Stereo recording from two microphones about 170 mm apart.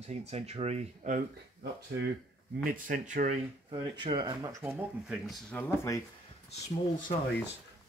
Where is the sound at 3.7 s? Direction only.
30° right (ahead or behind).